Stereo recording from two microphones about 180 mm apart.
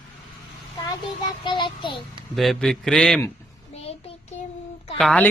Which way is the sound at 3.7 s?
35° left (ahead or behind).